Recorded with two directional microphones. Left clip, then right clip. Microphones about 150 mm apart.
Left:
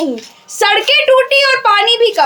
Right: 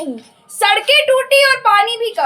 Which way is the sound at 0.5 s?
35° left (ahead or behind).